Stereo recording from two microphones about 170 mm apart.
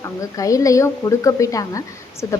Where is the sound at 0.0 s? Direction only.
20° left (ahead or behind).